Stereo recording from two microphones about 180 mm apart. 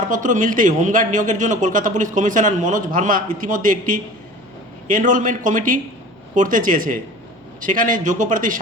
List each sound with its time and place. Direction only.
0.1 s a man's voice: 45° right (ahead or behind)